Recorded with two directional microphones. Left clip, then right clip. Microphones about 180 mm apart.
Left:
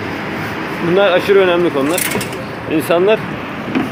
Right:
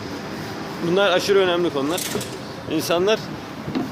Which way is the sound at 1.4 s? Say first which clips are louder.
Left 7 dB; 15° right (ahead or behind).